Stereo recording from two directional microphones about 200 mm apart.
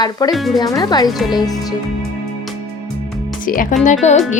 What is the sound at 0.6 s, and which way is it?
Speech, 20° left (ahead or behind).